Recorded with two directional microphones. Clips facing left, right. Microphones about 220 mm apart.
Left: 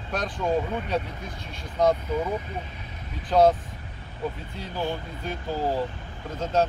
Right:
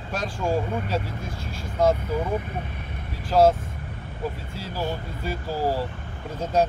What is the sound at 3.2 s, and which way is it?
Speech, 5° right (ahead or behind).